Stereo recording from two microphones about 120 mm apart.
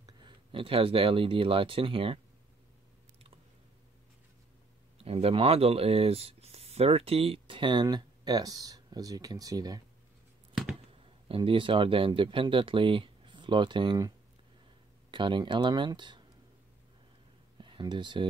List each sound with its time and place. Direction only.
0.0 s speech: 45° right (ahead or behind)
4.9 s speech: 55° right (ahead or behind); by 9.8 s 35° right (ahead or behind)
10.5 s a sound: centre (ahead or behind)
11.2 s speech: 45° right (ahead or behind)
17.6 s speech: 40° right (ahead or behind)